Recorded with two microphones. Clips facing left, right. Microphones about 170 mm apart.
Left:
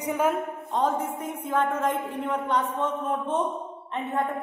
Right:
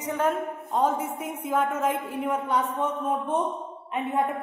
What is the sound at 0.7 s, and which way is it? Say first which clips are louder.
A woman's voice: right 1 dB; 10° right (ahead or behind).